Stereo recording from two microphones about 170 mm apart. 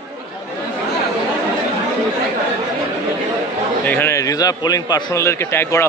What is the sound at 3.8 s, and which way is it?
A man's voice, 10° left (ahead or behind).